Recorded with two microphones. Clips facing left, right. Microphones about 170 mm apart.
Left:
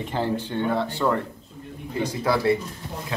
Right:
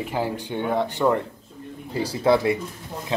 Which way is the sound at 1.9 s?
35° right (ahead or behind).